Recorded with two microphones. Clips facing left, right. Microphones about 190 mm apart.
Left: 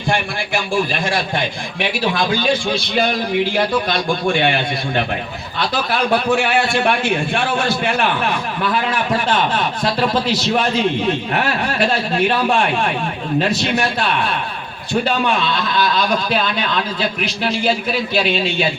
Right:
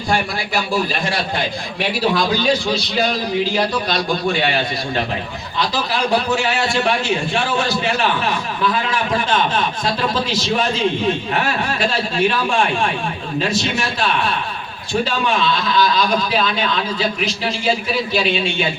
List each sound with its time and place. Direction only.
1.8 s a man's voice: 55° left (ahead or behind)